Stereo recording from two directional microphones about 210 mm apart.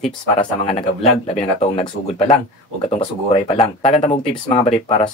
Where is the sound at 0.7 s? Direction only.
30° left (ahead or behind).